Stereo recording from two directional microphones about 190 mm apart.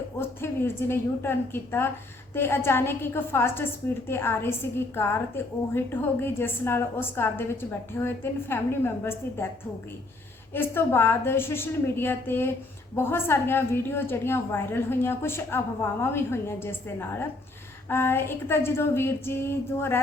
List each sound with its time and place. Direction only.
0.2 s a woman's voice: 10° left (ahead or behind)
10.5 s a woman's voice: 10° left (ahead or behind)